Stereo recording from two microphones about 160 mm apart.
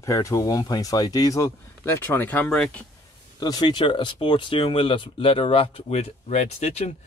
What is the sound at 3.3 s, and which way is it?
Speech, 25° left (ahead or behind).